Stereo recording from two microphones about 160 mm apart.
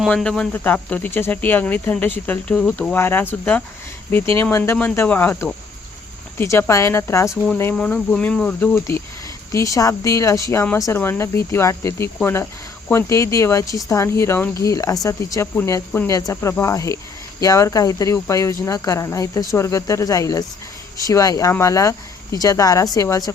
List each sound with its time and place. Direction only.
0.0 s speech: 5° left (ahead or behind); by 23.3 s 20° left (ahead or behind)